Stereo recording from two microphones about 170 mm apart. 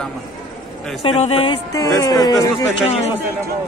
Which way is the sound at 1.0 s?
35° left (ahead or behind).